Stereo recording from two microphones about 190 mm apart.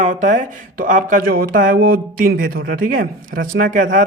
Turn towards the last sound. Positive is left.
turn(degrees=-45)  # may be behind; listen again after turning